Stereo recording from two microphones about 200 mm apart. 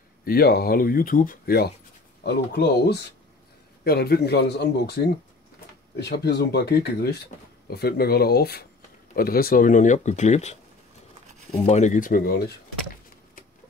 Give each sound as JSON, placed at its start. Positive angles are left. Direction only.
{"t": 0.2, "sound": "speech", "side_deg": 50}
{"t": 11.6, "sound": "speech", "side_deg": 35}